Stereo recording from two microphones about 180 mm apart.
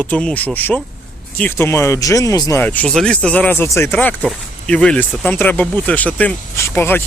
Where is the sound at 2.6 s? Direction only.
10° left (ahead or behind).